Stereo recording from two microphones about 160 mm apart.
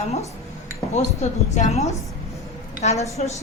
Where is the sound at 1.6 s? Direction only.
45° left (ahead or behind).